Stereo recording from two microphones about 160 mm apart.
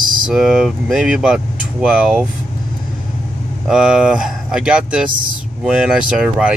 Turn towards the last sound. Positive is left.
turn(degrees=-5)  # may be behind; listen again after turning